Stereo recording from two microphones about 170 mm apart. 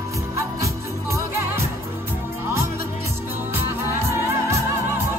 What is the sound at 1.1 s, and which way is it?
Music, 15° right (ahead or behind).